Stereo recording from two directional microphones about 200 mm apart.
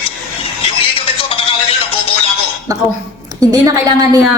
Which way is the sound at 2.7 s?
15° right (ahead or behind).